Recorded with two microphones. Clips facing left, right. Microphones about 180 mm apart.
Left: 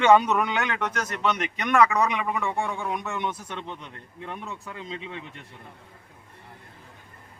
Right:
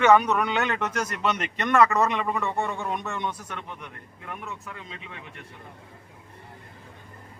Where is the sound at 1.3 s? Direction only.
5° left (ahead or behind).